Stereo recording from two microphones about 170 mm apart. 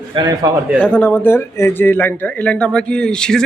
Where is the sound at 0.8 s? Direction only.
10° left (ahead or behind).